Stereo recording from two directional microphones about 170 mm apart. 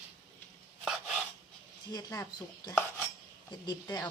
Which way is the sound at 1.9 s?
20° left (ahead or behind).